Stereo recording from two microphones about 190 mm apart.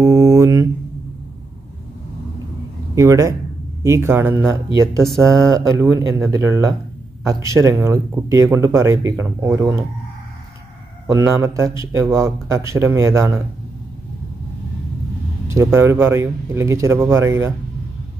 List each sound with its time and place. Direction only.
0.0 s mantra: 15° right (ahead or behind)
2.9 s speech: 15° right (ahead or behind)
5.0 s speech: centre (ahead or behind)
6.3 s speech: 15° right (ahead or behind)
11.1 s speech: 15° right (ahead or behind)
15.5 s speech: 15° right (ahead or behind)